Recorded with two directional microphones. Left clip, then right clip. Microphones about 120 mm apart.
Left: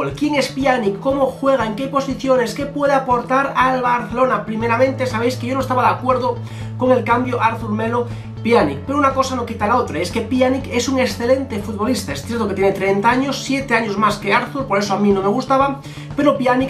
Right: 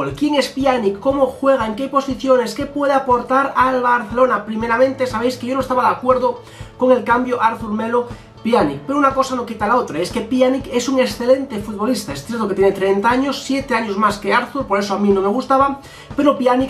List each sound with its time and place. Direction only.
0.4 s speech: centre (ahead or behind)
11.8 s speech: 5° left (ahead or behind)